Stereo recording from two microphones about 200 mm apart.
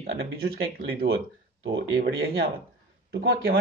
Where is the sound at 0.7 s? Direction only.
50° right (ahead or behind).